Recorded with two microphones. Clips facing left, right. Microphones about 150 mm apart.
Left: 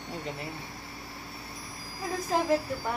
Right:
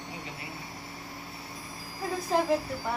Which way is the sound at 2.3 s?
Centre (ahead or behind).